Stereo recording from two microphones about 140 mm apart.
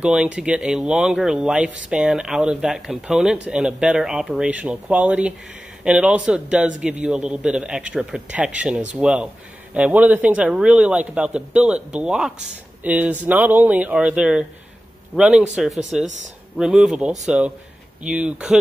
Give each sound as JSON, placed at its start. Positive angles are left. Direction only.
{"t": 0.0, "sound": "speech", "side_deg": -5}